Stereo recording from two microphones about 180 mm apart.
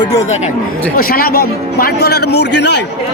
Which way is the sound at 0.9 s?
55° left (ahead or behind).